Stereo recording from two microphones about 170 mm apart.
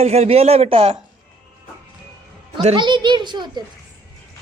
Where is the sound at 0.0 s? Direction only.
40° right (ahead or behind).